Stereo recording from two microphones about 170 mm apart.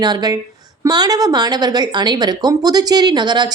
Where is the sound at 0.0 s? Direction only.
25° right (ahead or behind).